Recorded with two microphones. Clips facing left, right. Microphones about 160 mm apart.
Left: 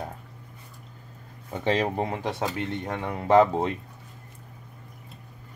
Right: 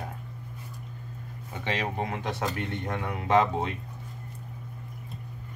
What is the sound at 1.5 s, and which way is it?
Speech, 40° left (ahead or behind).